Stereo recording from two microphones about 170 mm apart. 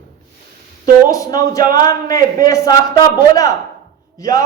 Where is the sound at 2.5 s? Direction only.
20° left (ahead or behind).